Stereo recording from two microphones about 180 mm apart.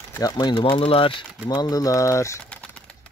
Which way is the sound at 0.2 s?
25° left (ahead or behind).